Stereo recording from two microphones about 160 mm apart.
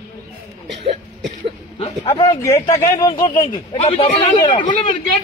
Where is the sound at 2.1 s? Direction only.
20° left (ahead or behind).